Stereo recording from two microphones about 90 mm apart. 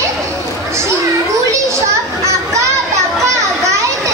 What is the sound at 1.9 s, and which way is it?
Children playing, 35° right (ahead or behind).